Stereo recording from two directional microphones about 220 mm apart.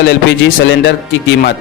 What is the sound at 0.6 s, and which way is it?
Speech, 55° left (ahead or behind).